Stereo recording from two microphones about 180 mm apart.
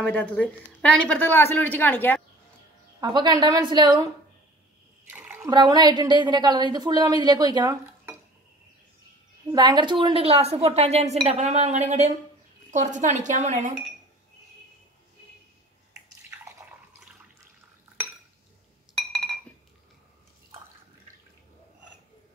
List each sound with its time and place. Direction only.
0.1 s speech: 10° left (ahead or behind)
3.0 s a woman's voice: 25° right (ahead or behind)
5.1 s bathtub: 10° right (ahead or behind)
5.5 s a woman's voice: 25° right (ahead or behind)
9.5 s speech: 25° right (ahead or behind); by 13.7 s 40° right (ahead or behind)